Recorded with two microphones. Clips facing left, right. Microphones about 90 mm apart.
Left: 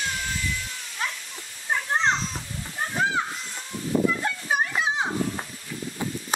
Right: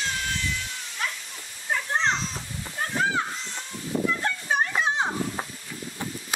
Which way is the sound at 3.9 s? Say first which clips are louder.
Left 4 dB; 90° left.